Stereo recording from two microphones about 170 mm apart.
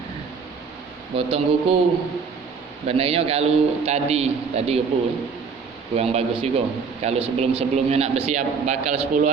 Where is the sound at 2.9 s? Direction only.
35° right (ahead or behind).